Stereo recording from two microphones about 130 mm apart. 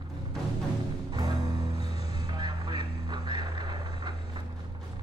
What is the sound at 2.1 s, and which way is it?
Music, 35° right (ahead or behind).